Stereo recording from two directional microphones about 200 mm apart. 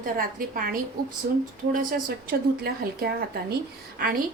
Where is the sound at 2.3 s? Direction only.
50° right (ahead or behind).